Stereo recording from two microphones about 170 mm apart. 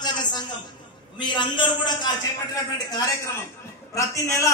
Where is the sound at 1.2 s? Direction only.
30° left (ahead or behind).